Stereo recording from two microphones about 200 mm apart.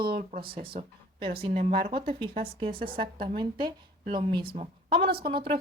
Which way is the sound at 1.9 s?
25° right (ahead or behind).